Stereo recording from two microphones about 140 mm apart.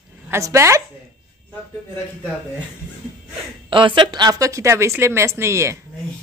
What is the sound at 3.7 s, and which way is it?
A woman's voice, 35° right (ahead or behind).